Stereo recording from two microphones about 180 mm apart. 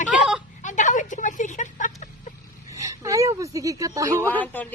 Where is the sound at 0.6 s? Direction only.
45° left (ahead or behind).